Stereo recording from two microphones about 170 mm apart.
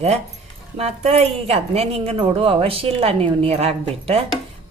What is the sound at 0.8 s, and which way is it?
A woman's voice, 40° right (ahead or behind).